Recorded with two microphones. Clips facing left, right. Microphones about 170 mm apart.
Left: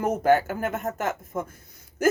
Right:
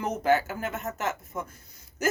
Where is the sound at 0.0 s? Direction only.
50° left (ahead or behind).